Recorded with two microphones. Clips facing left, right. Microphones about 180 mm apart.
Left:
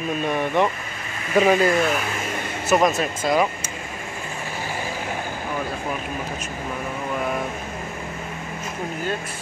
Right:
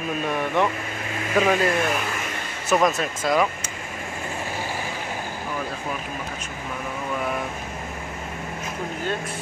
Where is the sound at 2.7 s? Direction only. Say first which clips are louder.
Left 2 dB; 5° left (ahead or behind).